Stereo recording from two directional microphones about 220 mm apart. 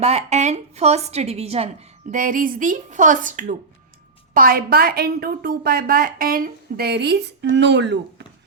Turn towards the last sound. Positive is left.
turn(degrees=-50)  # may be behind; listen again after turning